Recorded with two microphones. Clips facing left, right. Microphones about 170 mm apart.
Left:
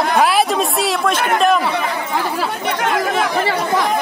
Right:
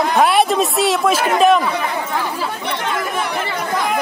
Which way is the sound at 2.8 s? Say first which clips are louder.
Left 5 dB; 80° left.